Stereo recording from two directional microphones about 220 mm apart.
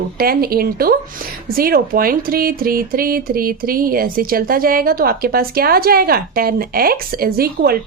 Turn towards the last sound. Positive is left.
turn(degrees=-45)  # may be behind; listen again after turning